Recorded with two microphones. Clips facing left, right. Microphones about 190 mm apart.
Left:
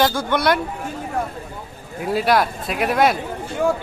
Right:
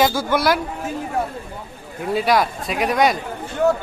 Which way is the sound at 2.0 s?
Centre (ahead or behind).